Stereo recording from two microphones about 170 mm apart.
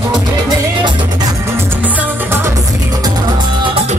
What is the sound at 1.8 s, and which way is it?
Music, 15° right (ahead or behind).